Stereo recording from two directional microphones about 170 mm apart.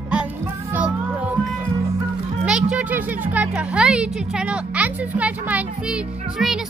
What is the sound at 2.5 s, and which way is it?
Speech, 5° right (ahead or behind).